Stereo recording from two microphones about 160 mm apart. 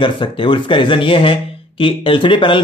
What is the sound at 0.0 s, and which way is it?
Speech, 30° left (ahead or behind).